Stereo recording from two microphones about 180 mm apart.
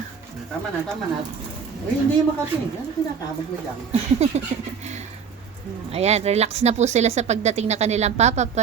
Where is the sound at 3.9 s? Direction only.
35° right (ahead or behind).